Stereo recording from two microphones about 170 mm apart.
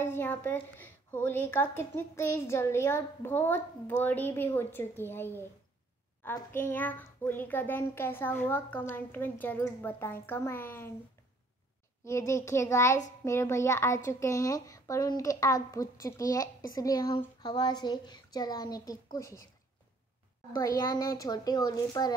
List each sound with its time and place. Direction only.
0.0 s a woman's voice: 10° left (ahead or behind)
12.0 s a woman's voice: 15° left (ahead or behind)
20.5 s speech: 20° left (ahead or behind)